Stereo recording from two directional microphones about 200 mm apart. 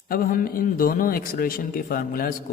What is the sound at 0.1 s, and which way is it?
A man's voice, 45° left (ahead or behind).